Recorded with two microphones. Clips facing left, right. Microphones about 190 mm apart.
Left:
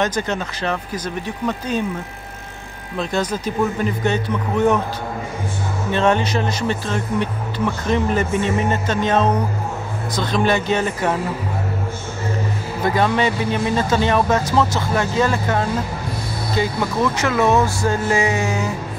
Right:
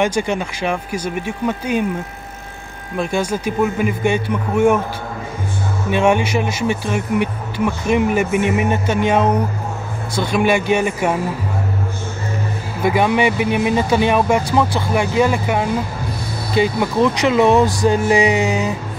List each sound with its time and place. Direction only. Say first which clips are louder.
0.0 s speech: right 3 dB; 10° right (ahead or behind)
3.0 s speech: right 2 dB; 10° right (ahead or behind)
5.9 s speech: right 2 dB; 15° right (ahead or behind)
12.8 s speech: right 3 dB; 10° right (ahead or behind)